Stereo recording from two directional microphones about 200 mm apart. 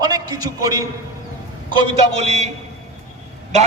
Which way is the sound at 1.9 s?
30° right (ahead or behind).